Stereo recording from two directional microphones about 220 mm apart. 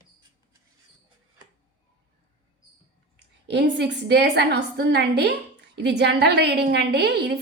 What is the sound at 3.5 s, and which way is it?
A woman's voice, 50° right (ahead or behind).